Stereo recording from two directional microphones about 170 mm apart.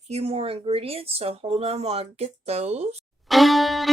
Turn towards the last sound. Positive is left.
turn(degrees=0)  # may be behind; listen again after turning